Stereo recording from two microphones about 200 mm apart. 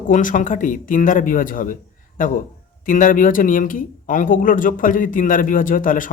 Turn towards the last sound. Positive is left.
turn(degrees=40)  # may be behind; listen again after turning